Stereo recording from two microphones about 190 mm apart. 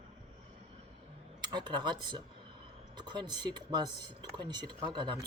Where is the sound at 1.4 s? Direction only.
25° right (ahead or behind).